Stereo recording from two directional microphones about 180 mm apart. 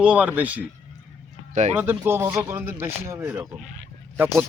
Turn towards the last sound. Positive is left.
turn(degrees=-10)  # may be behind; listen again after turning